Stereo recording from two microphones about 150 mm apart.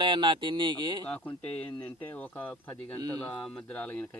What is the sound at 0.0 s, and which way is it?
Speech, 30° right (ahead or behind).